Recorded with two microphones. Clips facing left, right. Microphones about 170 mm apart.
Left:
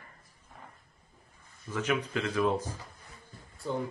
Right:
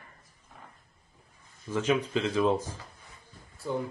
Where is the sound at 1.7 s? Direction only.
25° right (ahead or behind).